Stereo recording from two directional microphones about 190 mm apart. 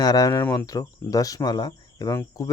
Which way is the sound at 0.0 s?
20° left (ahead or behind).